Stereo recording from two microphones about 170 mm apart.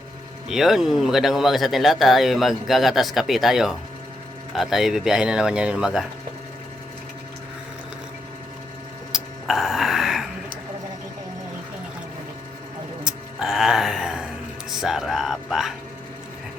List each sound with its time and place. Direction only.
0.4 s speech: centre (ahead or behind)
9.1 s burping: centre (ahead or behind)
13.1 s music: 5° right (ahead or behind)
14.7 s speech: 5° right (ahead or behind)